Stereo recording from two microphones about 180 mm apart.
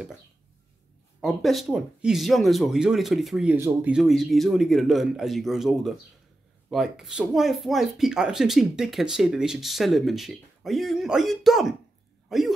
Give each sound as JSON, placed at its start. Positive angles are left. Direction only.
{"t": 1.2, "sound": "speech", "side_deg": 0}